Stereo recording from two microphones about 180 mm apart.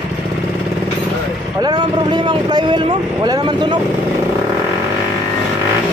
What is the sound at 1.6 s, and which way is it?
Speech, 25° right (ahead or behind).